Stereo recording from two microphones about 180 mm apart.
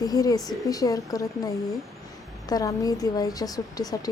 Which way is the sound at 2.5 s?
20° left (ahead or behind).